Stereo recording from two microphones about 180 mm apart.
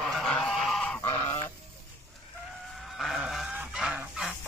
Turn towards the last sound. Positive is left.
turn(degrees=-5)  # may be behind; listen again after turning